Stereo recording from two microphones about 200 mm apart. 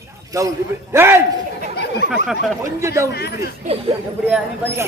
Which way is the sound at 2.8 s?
15° right (ahead or behind).